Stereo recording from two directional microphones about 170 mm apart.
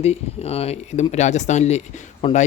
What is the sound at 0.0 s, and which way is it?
Speech, 35° left (ahead or behind).